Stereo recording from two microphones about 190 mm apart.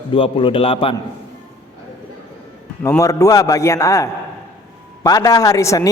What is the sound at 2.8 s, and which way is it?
A man's voice, 15° left (ahead or behind).